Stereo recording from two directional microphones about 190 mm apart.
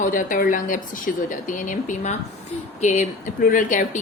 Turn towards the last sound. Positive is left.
turn(degrees=45)  # may be behind; listen again after turning